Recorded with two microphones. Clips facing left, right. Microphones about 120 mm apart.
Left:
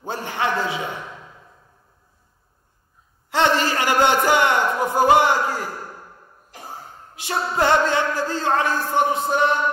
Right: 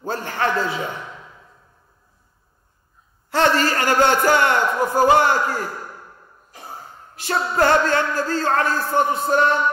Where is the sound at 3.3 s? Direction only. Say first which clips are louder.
Right 1 dB; 15° left (ahead or behind).